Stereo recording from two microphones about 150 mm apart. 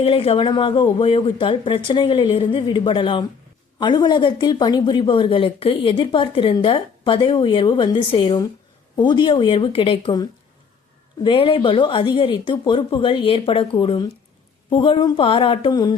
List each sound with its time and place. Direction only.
0.0 s speech: 40° left (ahead or behind)
11.2 s speech: 35° left (ahead or behind)